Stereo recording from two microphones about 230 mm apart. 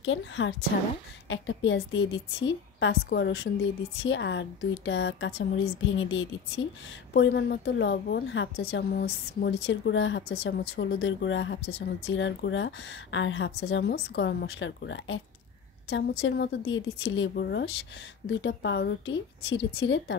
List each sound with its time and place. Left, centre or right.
0.0 s a woman's voice: left